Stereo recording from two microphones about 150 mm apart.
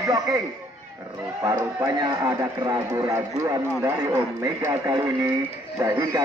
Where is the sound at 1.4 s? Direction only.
20° right (ahead or behind).